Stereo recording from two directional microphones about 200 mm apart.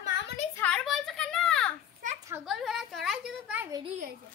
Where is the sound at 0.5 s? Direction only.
5° left (ahead or behind).